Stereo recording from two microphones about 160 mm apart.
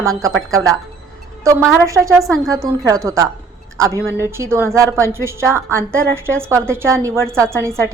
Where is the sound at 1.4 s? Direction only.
20° right (ahead or behind).